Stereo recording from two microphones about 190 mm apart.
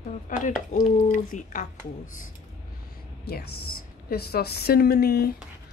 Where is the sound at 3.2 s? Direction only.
55° left (ahead or behind).